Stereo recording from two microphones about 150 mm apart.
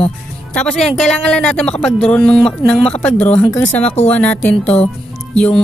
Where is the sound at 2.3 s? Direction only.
40° left (ahead or behind).